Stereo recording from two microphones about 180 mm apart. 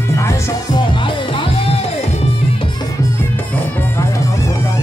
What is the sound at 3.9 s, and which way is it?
Music, 15° left (ahead or behind).